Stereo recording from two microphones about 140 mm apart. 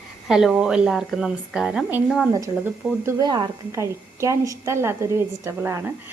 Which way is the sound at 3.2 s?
30° right (ahead or behind).